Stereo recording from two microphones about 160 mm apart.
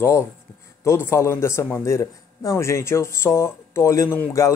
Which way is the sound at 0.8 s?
15° left (ahead or behind).